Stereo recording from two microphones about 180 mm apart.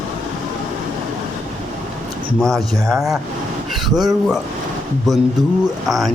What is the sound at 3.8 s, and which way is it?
Speech, centre (ahead or behind).